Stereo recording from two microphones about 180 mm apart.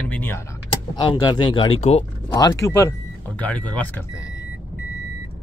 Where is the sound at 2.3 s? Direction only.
20° left (ahead or behind).